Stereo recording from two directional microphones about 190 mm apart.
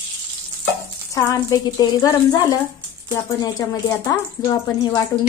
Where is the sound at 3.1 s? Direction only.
20° left (ahead or behind).